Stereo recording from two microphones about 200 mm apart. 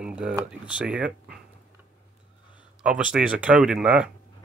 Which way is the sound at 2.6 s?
5° right (ahead or behind).